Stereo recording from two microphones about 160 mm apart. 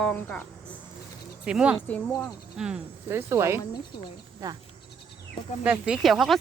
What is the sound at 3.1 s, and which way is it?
Speech, 15° right (ahead or behind).